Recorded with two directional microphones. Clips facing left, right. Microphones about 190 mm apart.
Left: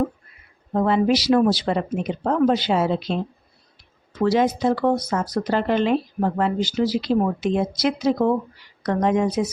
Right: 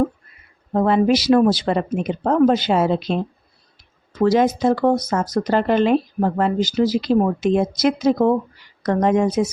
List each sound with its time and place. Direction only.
0.7 s speech: 50° right (ahead or behind)
4.2 s speech: 45° right (ahead or behind)